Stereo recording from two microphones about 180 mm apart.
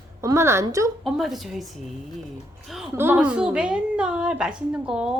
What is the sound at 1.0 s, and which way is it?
Speech, centre (ahead or behind).